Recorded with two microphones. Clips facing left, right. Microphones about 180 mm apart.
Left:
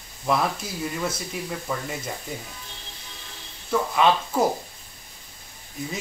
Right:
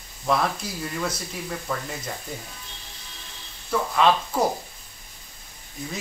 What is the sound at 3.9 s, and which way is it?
Speech, 5° left (ahead or behind).